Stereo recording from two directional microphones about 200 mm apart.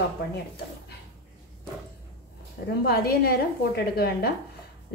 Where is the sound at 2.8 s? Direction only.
50° left (ahead or behind).